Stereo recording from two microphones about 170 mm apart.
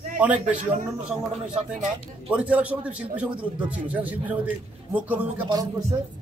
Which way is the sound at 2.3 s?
5° right (ahead or behind).